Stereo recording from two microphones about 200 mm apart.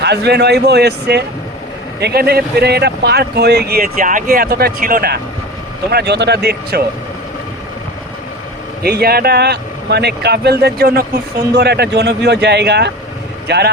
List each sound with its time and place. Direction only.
0.0 s speech: 55° right (ahead or behind)
8.8 s speech: 50° right (ahead or behind)